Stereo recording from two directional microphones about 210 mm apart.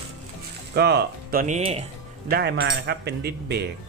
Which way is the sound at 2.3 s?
50° right (ahead or behind).